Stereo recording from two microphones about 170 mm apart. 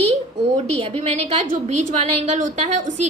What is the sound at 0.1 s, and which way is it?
A woman's voice, 40° right (ahead or behind).